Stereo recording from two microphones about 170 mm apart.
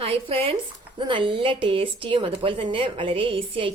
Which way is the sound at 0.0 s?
35° right (ahead or behind).